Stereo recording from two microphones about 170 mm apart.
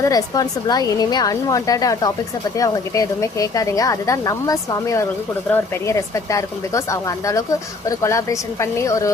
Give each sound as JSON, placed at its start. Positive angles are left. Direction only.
{"t": 0.0, "sound": "a woman's voice", "side_deg": 20}